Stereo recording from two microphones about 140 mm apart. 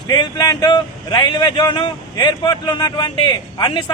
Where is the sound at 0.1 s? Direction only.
30° left (ahead or behind).